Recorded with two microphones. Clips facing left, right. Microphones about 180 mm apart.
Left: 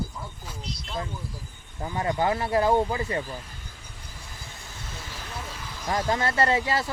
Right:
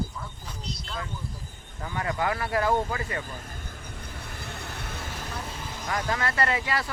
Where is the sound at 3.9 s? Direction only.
60° right (ahead or behind).